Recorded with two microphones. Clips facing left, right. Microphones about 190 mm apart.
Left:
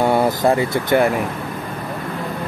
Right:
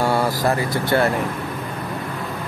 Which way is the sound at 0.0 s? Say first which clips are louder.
Left 4 dB; 20° left (ahead or behind).